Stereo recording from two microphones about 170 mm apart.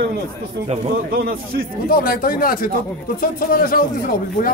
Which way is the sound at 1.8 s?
60° left (ahead or behind).